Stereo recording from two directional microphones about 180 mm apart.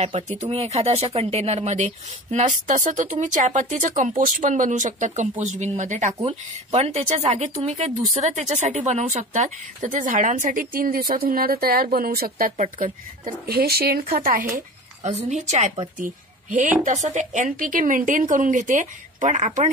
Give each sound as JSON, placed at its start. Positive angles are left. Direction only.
{"t": 0.1, "sound": "speech", "side_deg": -40}
{"t": 15.2, "sound": "a woman's voice", "side_deg": -40}